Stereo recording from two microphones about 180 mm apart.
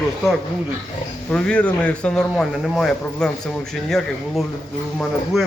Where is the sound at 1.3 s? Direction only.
5° left (ahead or behind).